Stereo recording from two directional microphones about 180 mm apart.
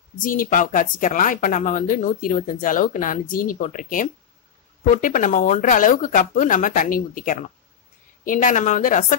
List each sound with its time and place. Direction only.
0.2 s speech: 50° left (ahead or behind)